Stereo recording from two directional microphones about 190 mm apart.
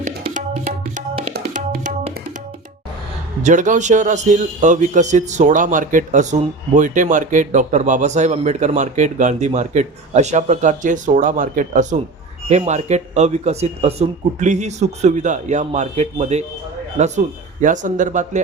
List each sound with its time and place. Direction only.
0.0 s tabla: 40° right (ahead or behind)
1.5 s music: 40° right (ahead or behind)
3.4 s a man's voice: 40° right (ahead or behind)